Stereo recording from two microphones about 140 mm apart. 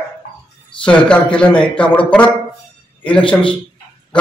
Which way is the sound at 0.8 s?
5° left (ahead or behind).